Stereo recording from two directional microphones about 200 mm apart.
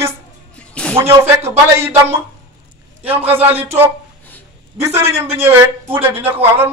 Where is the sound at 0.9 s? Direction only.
15° right (ahead or behind).